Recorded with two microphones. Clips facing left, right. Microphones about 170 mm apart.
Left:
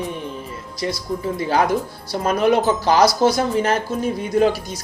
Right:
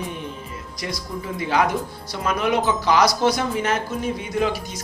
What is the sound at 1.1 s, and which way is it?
Speech, 35° left (ahead or behind).